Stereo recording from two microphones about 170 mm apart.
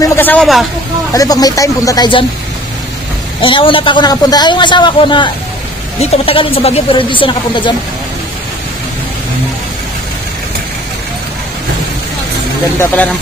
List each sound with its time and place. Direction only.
0.0 s a sound: 15° left (ahead or behind)
1.1 s a man's voice: 20° left (ahead or behind)
3.3 s a man's voice: 30° left (ahead or behind)
12.8 s speech: 10° left (ahead or behind)